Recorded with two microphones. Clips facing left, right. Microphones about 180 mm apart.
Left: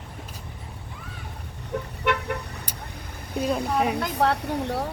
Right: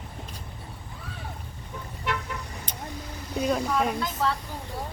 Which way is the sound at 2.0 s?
65° left (ahead or behind).